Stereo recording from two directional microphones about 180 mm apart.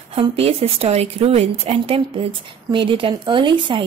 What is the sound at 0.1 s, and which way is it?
A woman's voice, 35° right (ahead or behind).